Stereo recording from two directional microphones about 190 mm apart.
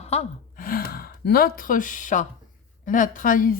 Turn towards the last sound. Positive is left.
turn(degrees=45)  # may be behind; listen again after turning